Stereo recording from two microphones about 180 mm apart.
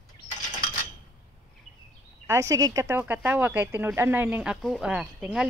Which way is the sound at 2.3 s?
15° right (ahead or behind).